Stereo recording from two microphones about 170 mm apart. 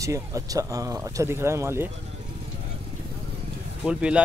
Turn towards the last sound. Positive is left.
turn(degrees=-5)  # may be behind; listen again after turning